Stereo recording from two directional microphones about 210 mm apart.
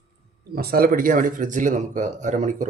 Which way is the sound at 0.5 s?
45° right (ahead or behind).